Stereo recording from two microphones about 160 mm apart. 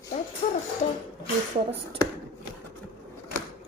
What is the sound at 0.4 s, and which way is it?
Music, 40° left (ahead or behind).